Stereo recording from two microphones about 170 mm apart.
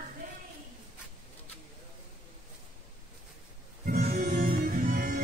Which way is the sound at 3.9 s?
55° right (ahead or behind).